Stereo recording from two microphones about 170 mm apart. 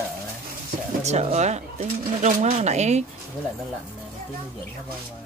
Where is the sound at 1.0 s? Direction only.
40° right (ahead or behind).